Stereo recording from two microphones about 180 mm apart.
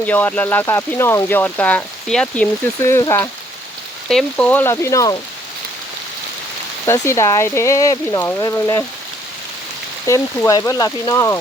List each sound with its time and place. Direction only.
0.0 s speech: 10° left (ahead or behind)
4.1 s speech: 5° left (ahead or behind)
6.8 s speech: 15° left (ahead or behind)
10.1 s speech: 20° left (ahead or behind)